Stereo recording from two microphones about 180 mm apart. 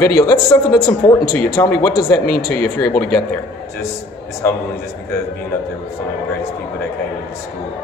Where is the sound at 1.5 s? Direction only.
15° left (ahead or behind).